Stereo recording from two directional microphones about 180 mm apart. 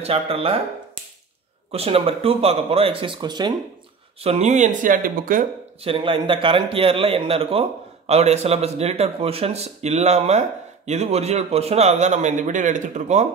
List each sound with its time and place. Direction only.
0.0 s a man's voice: 35° right (ahead or behind)
1.7 s a man's voice: 35° right (ahead or behind)
4.2 s speech: 35° right (ahead or behind)
5.9 s a man's voice: 30° right (ahead or behind)